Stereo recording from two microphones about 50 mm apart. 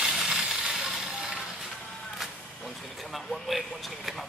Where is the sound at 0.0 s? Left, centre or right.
Centre.